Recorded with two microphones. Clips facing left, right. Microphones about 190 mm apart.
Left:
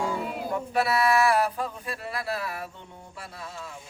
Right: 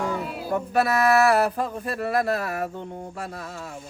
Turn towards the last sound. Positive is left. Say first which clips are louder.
# right 9 dB
turn(degrees=-45)  # may be behind; listen again after turning